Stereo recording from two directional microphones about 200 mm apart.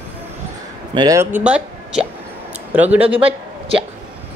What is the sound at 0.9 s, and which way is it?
Speech, 15° right (ahead or behind).